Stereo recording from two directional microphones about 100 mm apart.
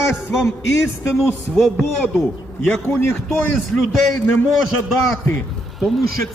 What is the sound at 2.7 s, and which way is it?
Speech, 20° left (ahead or behind).